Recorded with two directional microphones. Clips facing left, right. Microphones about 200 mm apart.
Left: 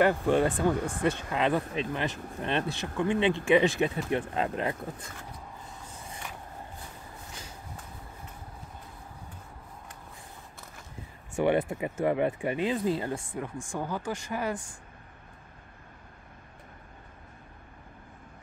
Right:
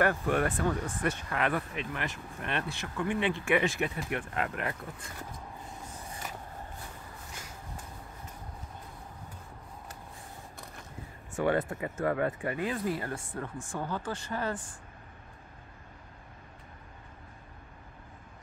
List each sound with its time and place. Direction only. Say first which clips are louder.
0.0 s speech: left 4 dB; 20° left (ahead or behind)
11.3 s speech: left 3 dB; 25° left (ahead or behind)
11.6 s speech: left 3 dB; 15° left (ahead or behind)